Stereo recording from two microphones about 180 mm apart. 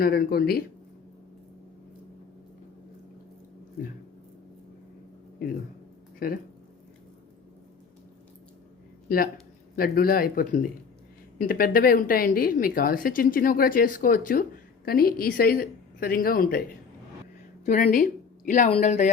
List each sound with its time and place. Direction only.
0.0 s speech: 60° left (ahead or behind)
6.1 s speech: 55° left (ahead or behind)
9.0 s speech: 55° left (ahead or behind)
17.8 s speech: 50° left (ahead or behind)